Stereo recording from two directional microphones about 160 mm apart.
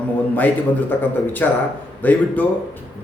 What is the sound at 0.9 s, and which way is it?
A man's voice, 10° left (ahead or behind).